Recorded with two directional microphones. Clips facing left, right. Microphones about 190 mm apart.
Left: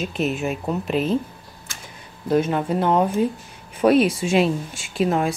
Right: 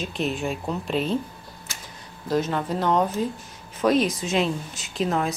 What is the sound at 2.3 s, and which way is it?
Speech, 10° left (ahead or behind).